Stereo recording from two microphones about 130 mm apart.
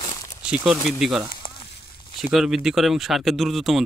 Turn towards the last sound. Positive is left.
turn(degrees=0)  # may be behind; listen again after turning